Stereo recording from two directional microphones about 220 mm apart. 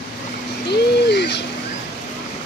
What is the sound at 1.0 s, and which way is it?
Owl, 50° left (ahead or behind).